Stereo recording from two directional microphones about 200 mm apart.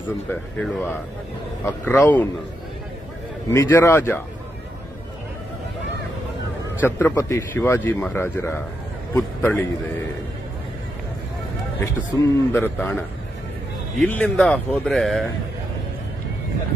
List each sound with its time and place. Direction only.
0.3 s a man's voice: 10° left (ahead or behind)
1.9 s a man's voice: 10° left (ahead or behind)
3.4 s a man's voice: 10° left (ahead or behind)
7.0 s a man's voice: 10° left (ahead or behind)
11.8 s a man's voice: 15° left (ahead or behind)